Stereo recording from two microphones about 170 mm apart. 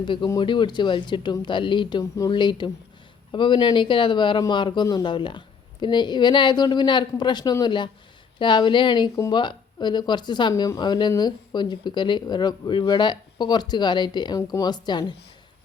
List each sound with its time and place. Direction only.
0.0 s speech: 30° left (ahead or behind)